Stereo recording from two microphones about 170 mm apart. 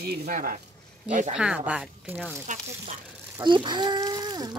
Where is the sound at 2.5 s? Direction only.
50° right (ahead or behind).